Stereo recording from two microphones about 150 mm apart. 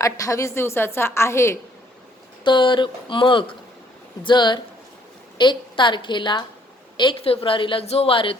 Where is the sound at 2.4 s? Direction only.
30° left (ahead or behind).